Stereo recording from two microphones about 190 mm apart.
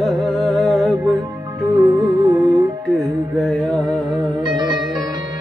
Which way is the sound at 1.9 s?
15° right (ahead or behind).